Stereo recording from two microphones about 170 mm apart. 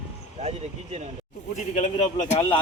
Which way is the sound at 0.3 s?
40° right (ahead or behind).